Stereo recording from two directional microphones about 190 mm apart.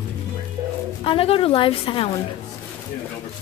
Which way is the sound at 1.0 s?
30° left (ahead or behind).